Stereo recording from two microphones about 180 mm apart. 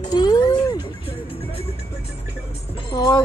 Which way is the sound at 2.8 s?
20° left (ahead or behind).